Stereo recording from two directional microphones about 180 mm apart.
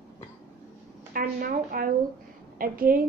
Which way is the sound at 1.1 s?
50° right (ahead or behind).